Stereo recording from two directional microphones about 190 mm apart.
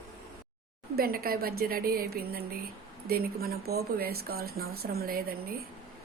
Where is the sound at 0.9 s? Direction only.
55° right (ahead or behind).